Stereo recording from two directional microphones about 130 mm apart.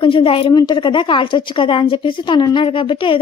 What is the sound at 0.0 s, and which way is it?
A woman's voice, 45° left (ahead or behind).